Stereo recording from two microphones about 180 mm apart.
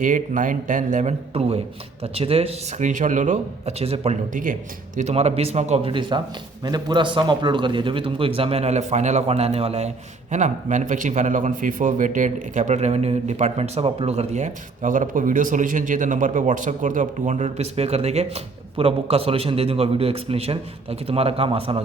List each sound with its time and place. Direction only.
0.0 s a man's voice: 45° right (ahead or behind); by 21.8 s 30° right (ahead or behind)